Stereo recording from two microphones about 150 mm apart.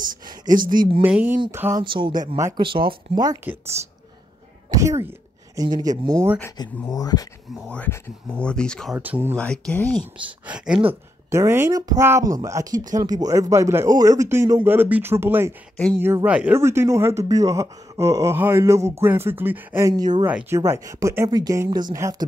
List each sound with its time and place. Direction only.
0.6 s speech: 65° right (ahead or behind)
1.0 s speech: 10° right (ahead or behind)
1.8 s speech: 35° right (ahead or behind)
2.3 s a man's voice: 20° right (ahead or behind)
2.6 s speech: 35° right (ahead or behind)
4.6 s a man's voice: 20° right (ahead or behind)
6.9 s speech: 25° left (ahead or behind)
7.7 s speech: 10° left (ahead or behind)
8.9 s speech: 10° right (ahead or behind)
9.4 s speech: 10° left (ahead or behind)
10.4 s speech: 5° right (ahead or behind)
11.2 s a man's voice: 20° right (ahead or behind)
19.9 s a man's voice: 25° right (ahead or behind)
20.2 s a man's voice: 15° right (ahead or behind)